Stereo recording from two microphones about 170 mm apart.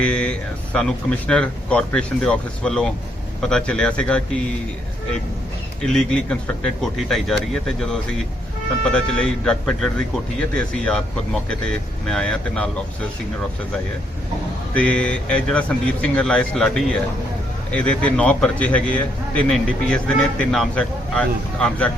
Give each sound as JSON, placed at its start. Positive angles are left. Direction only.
{"t": 0.0, "sound": "speech", "side_deg": 5}
{"t": 5.8, "sound": "speech", "side_deg": 5}
{"t": 8.8, "sound": "speech", "side_deg": 5}
{"t": 14.7, "sound": "a man's voice", "side_deg": 5}